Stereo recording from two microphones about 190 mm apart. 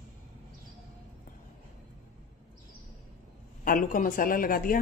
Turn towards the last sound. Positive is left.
turn(degrees=50)  # may be behind; listen again after turning